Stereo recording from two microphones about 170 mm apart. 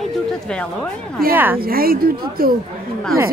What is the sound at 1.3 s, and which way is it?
Speech, 10° right (ahead or behind).